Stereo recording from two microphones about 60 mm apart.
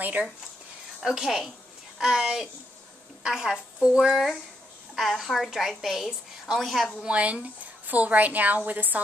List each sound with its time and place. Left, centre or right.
0.0 s speech: right
1.0 s a woman's voice: centre
4.9 s a woman's voice: centre
7.0 s a woman's voice: centre